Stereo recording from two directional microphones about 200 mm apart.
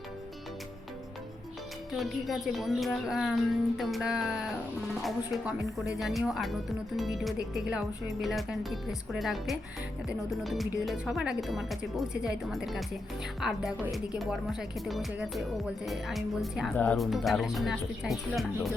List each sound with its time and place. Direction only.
1.9 s speech: centre (ahead or behind)